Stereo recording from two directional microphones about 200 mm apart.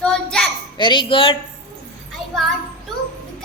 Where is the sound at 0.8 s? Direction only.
25° left (ahead or behind).